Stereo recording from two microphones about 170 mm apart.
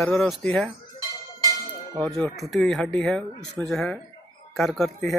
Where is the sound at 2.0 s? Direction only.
Centre (ahead or behind).